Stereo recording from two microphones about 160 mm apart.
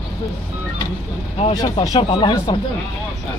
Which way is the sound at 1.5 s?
25° left (ahead or behind).